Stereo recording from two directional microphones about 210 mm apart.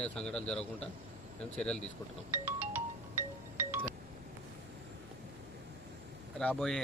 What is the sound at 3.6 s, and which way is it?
Wind chime, 10° right (ahead or behind).